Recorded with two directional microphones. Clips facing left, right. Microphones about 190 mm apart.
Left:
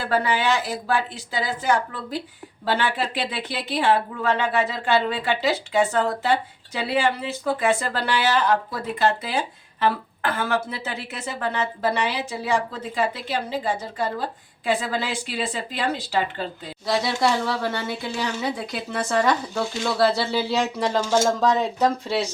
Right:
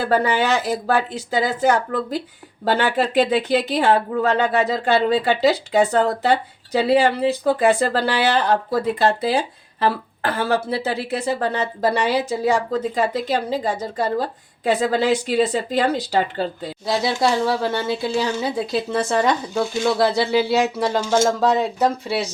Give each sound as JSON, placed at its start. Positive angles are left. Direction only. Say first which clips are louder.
{"t": 0.0, "sound": "speech", "louder": "right 4 dB", "side_deg": -40}
{"t": 16.8, "sound": "speech", "louder": "right 2 dB", "side_deg": -25}